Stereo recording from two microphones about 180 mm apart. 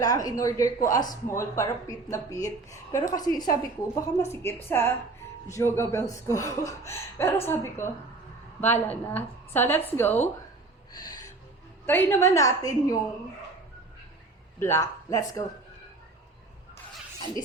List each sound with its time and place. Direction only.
0.0 s a woman's voice: 20° left (ahead or behind)
10.9 s gasp: 20° left (ahead or behind)
11.9 s a woman's voice: 10° left (ahead or behind)
14.6 s a woman's voice: 15° left (ahead or behind)